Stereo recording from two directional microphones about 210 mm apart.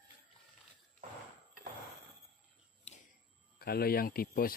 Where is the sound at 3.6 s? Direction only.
45° left (ahead or behind).